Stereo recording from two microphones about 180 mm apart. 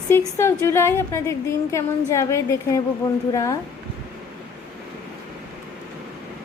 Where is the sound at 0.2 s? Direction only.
15° left (ahead or behind).